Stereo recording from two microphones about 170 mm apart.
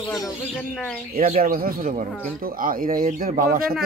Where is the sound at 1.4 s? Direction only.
60° right (ahead or behind).